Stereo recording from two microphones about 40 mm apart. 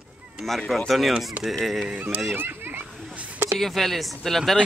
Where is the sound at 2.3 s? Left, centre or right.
Right.